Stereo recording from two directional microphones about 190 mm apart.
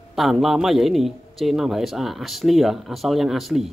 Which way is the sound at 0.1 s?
Centre (ahead or behind).